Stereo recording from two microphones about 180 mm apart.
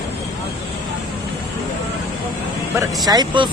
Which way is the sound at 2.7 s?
20° right (ahead or behind).